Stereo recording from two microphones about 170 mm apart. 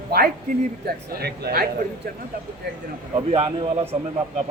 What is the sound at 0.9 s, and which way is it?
Speech, 70° right (ahead or behind).